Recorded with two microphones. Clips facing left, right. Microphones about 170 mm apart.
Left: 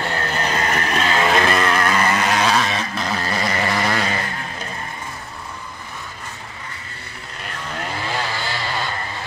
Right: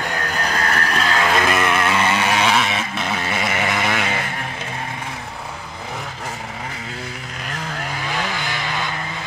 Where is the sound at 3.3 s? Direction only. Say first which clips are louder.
Even; 5° right (ahead or behind).